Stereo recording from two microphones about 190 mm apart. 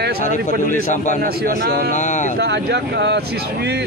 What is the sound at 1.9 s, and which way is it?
Speech, 40° left (ahead or behind).